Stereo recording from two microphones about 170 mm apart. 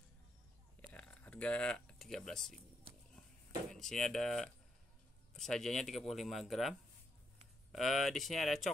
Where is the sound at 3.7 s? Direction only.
5° left (ahead or behind).